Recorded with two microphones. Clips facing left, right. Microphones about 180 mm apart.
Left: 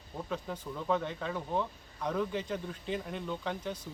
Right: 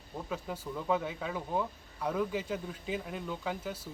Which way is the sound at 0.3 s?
5° right (ahead or behind).